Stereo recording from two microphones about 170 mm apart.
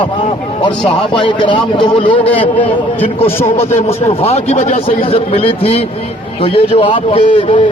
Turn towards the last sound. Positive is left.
turn(degrees=30)  # may be behind; listen again after turning